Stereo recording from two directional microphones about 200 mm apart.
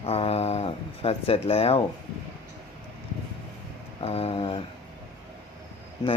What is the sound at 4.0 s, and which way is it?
Speech, 30° left (ahead or behind).